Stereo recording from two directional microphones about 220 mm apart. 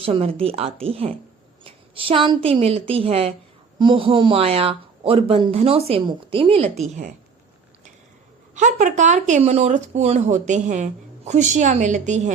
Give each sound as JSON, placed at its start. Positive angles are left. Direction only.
{"t": 0.0, "sound": "speech", "side_deg": -25}
{"t": 8.5, "sound": "speech", "side_deg": -35}